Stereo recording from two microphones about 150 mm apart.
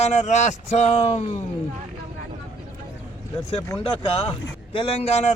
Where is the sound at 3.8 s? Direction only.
40° left (ahead or behind).